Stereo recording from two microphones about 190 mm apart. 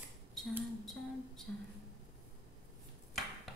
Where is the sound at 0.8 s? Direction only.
Centre (ahead or behind).